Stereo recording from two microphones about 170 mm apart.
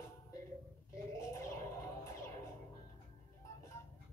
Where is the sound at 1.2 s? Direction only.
15° left (ahead or behind).